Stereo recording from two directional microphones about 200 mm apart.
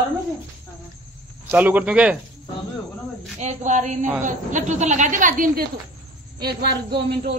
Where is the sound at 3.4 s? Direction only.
35° right (ahead or behind).